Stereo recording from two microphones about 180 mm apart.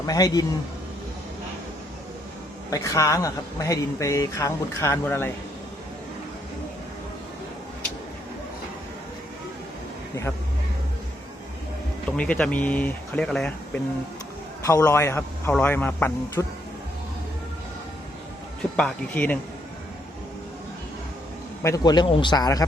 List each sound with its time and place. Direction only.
0.1 s a man's voice: 20° left (ahead or behind)
2.6 s speech: 20° left (ahead or behind)
12.1 s speech: 5° left (ahead or behind)
14.7 s speech: 20° left (ahead or behind)
18.8 s speech: 5° left (ahead or behind)
21.6 s a man's voice: 20° left (ahead or behind)